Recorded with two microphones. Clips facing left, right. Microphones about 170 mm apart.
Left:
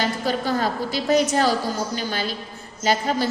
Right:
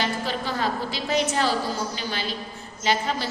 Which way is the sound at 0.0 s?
45° left (ahead or behind).